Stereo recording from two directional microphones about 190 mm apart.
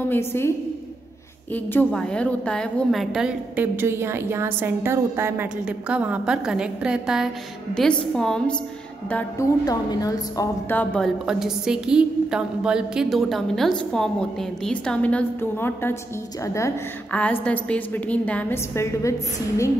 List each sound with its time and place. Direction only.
0.1 s a woman's voice: 10° left (ahead or behind)
1.5 s a woman's voice: 10° left (ahead or behind)
9.1 s a woman's voice: 20° left (ahead or behind)
11.2 s a woman's voice: 5° right (ahead or behind); by 19.7 s 15° left (ahead or behind)